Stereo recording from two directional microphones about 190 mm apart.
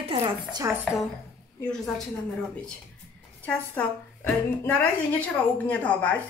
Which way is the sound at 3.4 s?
10° left (ahead or behind).